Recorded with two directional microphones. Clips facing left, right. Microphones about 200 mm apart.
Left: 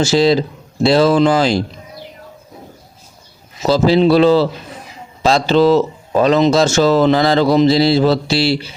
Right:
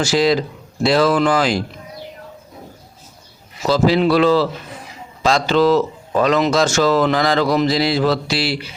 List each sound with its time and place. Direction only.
0.0 s speech: 25° left (ahead or behind)
3.6 s speech: 30° left (ahead or behind)